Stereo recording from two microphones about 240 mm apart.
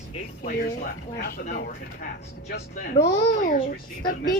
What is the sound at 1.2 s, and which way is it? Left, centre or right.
Speech, left.